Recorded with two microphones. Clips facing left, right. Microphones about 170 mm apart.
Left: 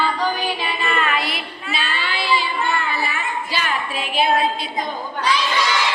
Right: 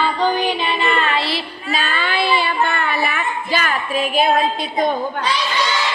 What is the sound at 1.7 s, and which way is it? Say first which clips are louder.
Child singing: right 5 dB; 45° right (ahead or behind).